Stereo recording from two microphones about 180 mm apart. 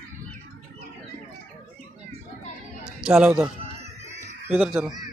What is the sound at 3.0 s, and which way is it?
Speech, 5° right (ahead or behind).